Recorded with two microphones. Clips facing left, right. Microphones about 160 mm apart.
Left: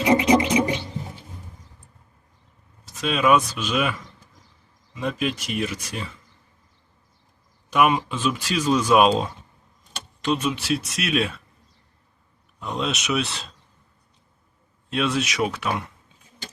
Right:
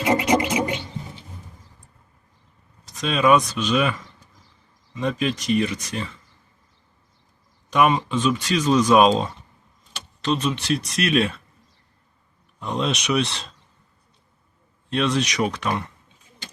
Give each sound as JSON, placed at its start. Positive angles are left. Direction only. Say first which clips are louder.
{"t": 0.0, "sound": "scratch", "louder": "left 2 dB", "side_deg": 20}
{"t": 2.8, "sound": "speech", "louder": "right 1 dB", "side_deg": 5}
{"t": 4.9, "sound": "speech", "louder": "right 2 dB", "side_deg": 5}
{"t": 7.7, "sound": "speech", "louder": "right 1 dB", "side_deg": 5}
{"t": 12.5, "sound": "speech", "louder": "right 2 dB", "side_deg": 0}
{"t": 14.8, "sound": "speech", "louder": "right 2 dB", "side_deg": 5}